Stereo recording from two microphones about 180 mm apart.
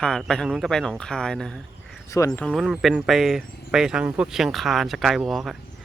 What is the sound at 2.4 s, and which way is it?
Speech, centre (ahead or behind).